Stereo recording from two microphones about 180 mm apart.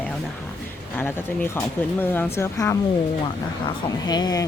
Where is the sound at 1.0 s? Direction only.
10° left (ahead or behind).